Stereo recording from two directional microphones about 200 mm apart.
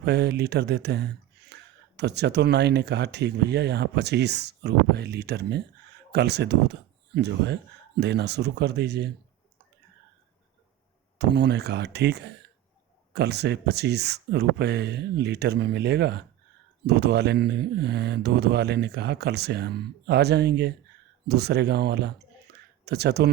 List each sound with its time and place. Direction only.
0.0 s mantra: 55° right (ahead or behind)
11.2 s mantra: 55° right (ahead or behind)